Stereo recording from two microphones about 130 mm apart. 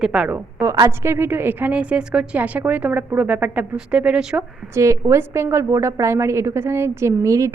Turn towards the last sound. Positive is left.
turn(degrees=-25)  # may be behind; listen again after turning